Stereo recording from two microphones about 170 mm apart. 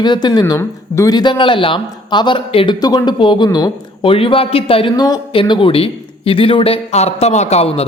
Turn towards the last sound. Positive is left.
turn(degrees=35)  # may be behind; listen again after turning